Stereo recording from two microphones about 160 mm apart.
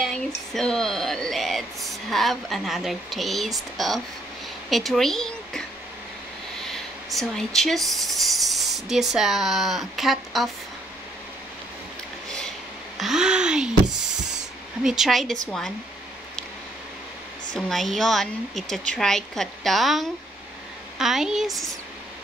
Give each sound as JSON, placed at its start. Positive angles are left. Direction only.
{"t": 0.0, "sound": "a woman's voice", "side_deg": 0}
{"t": 6.7, "sound": "speech", "side_deg": 0}
{"t": 13.0, "sound": "speech", "side_deg": -5}
{"t": 14.3, "sound": "a sound", "side_deg": -5}
{"t": 15.4, "sound": "speech", "side_deg": 5}
{"t": 17.6, "sound": "speech", "side_deg": 0}